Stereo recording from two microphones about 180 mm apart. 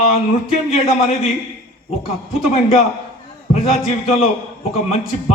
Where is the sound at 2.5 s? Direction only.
35° left (ahead or behind).